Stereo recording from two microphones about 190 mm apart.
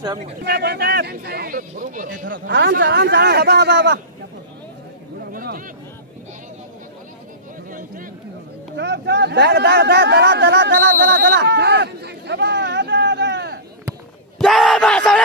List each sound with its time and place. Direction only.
0.4 s speech: 60° right (ahead or behind); by 2.3 s 45° right (ahead or behind)
2.4 s speech: 55° right (ahead or behind)
5.3 s speech: 50° right (ahead or behind)
7.7 s a man's voice: 45° right (ahead or behind)
8.7 s speech: 60° right (ahead or behind)
14.4 s a sound: centre (ahead or behind)